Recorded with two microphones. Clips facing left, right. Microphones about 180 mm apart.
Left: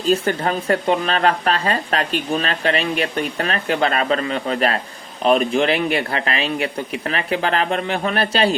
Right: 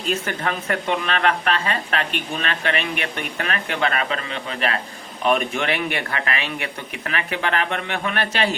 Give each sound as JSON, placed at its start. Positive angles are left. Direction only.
{"t": 0.0, "sound": "speech", "side_deg": 30}